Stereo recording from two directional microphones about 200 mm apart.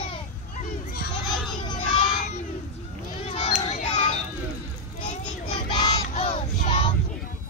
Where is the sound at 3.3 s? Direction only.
30° left (ahead or behind).